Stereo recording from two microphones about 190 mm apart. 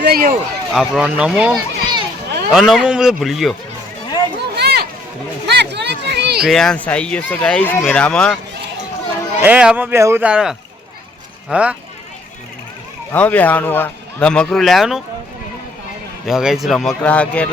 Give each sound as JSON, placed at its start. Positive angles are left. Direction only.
{"t": 0.0, "sound": "speech", "side_deg": -50}
{"t": 0.7, "sound": "speech", "side_deg": -5}
{"t": 1.5, "sound": "children playing", "side_deg": -20}
{"t": 2.5, "sound": "speech", "side_deg": 0}
{"t": 4.4, "sound": "a sound", "side_deg": -60}
{"t": 6.5, "sound": "speech", "side_deg": 5}
{"t": 9.4, "sound": "speech", "side_deg": -5}
{"t": 13.1, "sound": "a man's voice", "side_deg": 10}
{"t": 16.2, "sound": "speech", "side_deg": -5}